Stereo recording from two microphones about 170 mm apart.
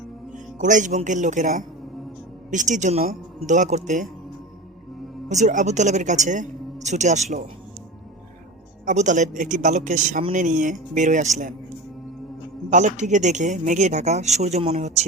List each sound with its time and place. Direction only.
0.6 s speech: 50° right (ahead or behind)
5.3 s speech: 45° right (ahead or behind)
8.9 s speech: 45° right (ahead or behind)
12.7 s speech: 45° right (ahead or behind)